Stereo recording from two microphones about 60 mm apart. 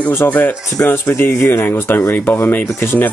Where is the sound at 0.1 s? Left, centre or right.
Left.